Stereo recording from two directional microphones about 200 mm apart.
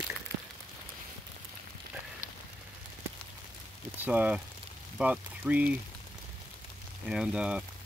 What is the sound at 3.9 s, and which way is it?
Speech, 10° right (ahead or behind).